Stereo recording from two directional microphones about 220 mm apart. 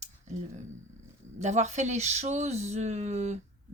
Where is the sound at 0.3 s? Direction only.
30° right (ahead or behind).